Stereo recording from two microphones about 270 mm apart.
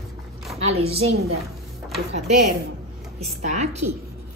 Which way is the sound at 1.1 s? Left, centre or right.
Right.